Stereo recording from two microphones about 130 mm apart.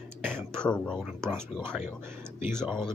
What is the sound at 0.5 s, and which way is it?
Speech, 5° left (ahead or behind).